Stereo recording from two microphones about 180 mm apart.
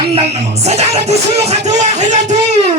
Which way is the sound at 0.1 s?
35° right (ahead or behind).